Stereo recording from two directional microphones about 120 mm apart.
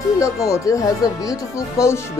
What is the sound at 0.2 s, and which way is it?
Speech, 25° left (ahead or behind).